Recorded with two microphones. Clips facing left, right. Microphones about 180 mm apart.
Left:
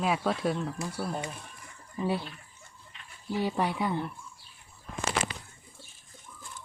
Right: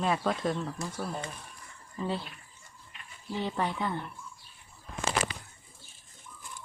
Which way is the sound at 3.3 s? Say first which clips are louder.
Left 3 dB; 10° left (ahead or behind).